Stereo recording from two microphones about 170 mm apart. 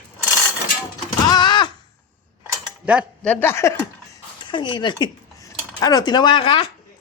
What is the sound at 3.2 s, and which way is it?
Speech, 15° left (ahead or behind).